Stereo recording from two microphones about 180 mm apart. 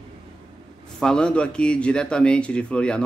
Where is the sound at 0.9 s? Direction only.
5° left (ahead or behind).